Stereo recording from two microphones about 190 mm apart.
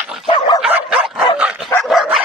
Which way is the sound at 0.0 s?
5° right (ahead or behind).